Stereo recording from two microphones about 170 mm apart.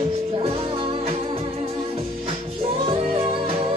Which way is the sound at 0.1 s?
35° right (ahead or behind).